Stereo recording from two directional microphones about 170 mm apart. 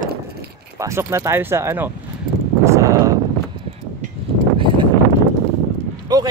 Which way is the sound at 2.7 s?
20° right (ahead or behind).